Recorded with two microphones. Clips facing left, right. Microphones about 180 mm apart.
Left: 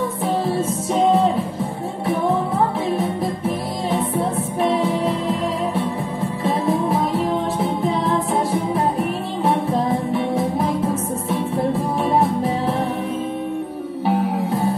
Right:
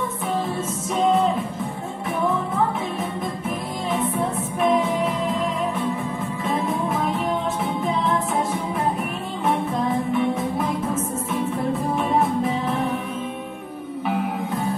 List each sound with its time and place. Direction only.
0.6 s music: 35° left (ahead or behind)
6.4 s music: 35° left (ahead or behind)
8.5 s music: 35° left (ahead or behind)
14.0 s music: 35° left (ahead or behind)